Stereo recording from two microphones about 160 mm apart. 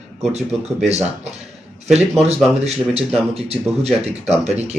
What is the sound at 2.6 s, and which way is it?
Speech, 40° right (ahead or behind).